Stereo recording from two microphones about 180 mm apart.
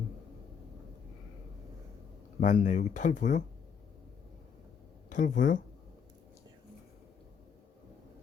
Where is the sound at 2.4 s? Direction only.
45° left (ahead or behind).